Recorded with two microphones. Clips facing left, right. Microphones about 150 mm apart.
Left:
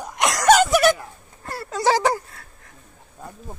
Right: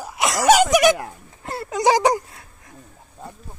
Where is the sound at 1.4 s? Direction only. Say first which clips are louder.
Right 2 dB; 20° right (ahead or behind).